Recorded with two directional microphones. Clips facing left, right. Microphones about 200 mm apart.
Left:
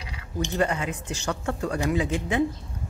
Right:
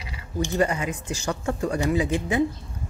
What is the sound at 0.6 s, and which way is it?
Speech, 10° right (ahead or behind).